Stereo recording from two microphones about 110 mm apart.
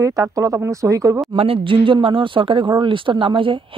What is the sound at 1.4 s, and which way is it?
Speech, 60° right (ahead or behind).